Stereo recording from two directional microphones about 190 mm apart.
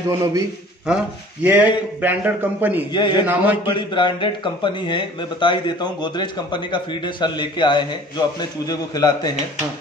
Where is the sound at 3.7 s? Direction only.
25° left (ahead or behind).